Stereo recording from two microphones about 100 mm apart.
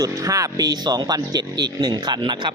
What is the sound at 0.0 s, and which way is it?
Speech, 35° right (ahead or behind).